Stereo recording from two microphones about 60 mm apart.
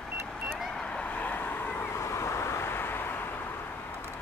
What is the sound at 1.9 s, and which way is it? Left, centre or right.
Vehicle, left.